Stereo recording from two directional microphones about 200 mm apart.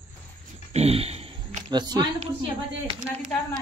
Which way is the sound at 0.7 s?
30° right (ahead or behind).